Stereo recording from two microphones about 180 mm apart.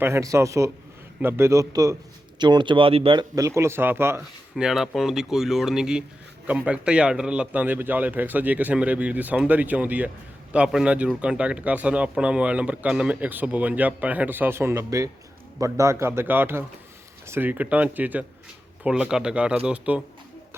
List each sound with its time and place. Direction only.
0.0 s speech: 15° right (ahead or behind)
4.5 s speech: centre (ahead or behind)